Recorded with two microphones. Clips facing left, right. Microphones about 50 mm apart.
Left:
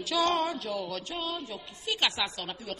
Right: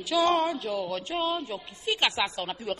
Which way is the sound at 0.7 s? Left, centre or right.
Centre.